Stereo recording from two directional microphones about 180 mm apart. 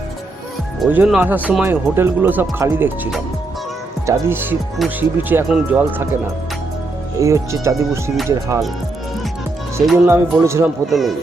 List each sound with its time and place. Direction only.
0.9 s speech: 10° right (ahead or behind)
7.2 s speech: 15° right (ahead or behind)
9.8 s speech: centre (ahead or behind)
10.1 s speech: 15° right (ahead or behind)
10.8 s speech: centre (ahead or behind)